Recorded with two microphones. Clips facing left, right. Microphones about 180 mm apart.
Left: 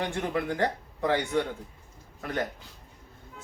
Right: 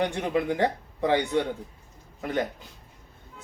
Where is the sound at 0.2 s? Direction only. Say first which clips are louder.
Right 3 dB; 20° right (ahead or behind).